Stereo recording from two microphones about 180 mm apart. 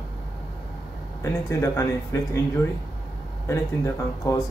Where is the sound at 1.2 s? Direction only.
15° left (ahead or behind).